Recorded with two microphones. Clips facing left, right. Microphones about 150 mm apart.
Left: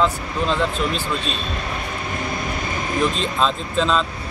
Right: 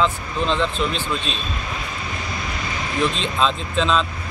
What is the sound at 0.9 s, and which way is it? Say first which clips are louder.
Speech: left 1 dB; 45° left (ahead or behind).